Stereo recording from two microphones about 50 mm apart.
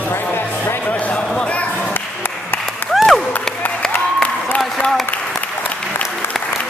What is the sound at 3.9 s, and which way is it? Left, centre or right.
Applause, left.